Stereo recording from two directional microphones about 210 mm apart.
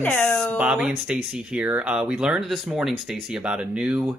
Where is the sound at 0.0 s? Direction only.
5° left (ahead or behind).